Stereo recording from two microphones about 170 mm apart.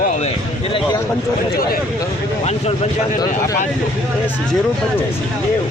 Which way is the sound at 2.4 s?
40° left (ahead or behind).